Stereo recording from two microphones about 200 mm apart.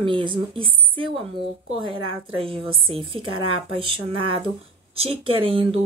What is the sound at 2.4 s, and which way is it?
Speech, 25° right (ahead or behind).